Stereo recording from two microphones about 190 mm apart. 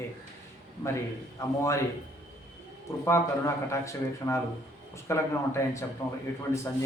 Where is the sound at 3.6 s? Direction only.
15° left (ahead or behind).